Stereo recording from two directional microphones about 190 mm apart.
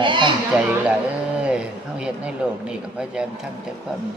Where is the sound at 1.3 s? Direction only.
5° right (ahead or behind).